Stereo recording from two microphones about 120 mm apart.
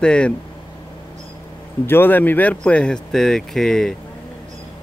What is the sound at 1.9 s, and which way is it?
Speech, 15° left (ahead or behind).